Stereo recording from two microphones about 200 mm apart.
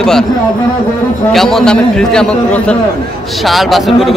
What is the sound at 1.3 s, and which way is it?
A man's voice, centre (ahead or behind).